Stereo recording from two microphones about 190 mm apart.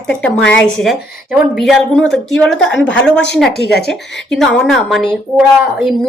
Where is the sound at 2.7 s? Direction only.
70° left (ahead or behind).